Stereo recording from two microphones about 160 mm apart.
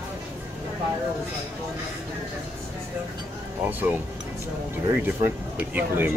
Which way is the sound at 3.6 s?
10° right (ahead or behind).